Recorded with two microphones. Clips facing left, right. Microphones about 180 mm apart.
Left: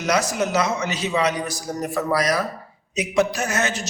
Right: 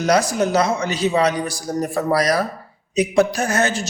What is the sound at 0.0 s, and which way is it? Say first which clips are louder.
A man's voice: right 4 dB; 35° right (ahead or behind).